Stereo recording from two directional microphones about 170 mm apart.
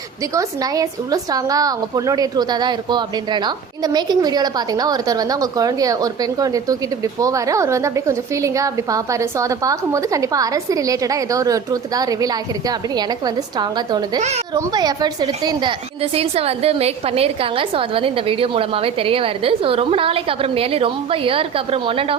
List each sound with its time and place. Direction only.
0.3 s a woman's voice: 20° right (ahead or behind)
14.2 s a woman's voice: 40° right (ahead or behind)
14.5 s a woman's voice: 25° right (ahead or behind)
16.1 s a woman's voice: 35° right (ahead or behind)